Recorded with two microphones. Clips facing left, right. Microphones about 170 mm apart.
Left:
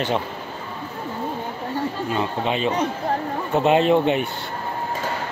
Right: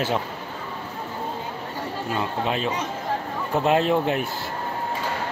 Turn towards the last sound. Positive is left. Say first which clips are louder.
# left 4 dB
turn(degrees=0)  # may be behind; listen again after turning